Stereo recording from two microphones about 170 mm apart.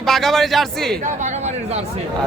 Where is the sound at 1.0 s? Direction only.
45° right (ahead or behind).